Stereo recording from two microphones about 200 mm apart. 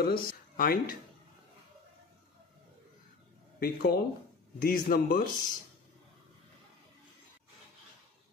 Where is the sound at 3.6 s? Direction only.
50° left (ahead or behind).